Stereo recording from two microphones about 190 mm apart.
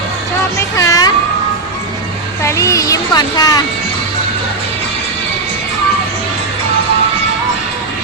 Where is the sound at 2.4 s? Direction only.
15° left (ahead or behind).